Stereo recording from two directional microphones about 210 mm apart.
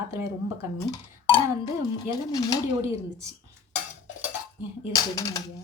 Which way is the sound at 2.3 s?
15° left (ahead or behind).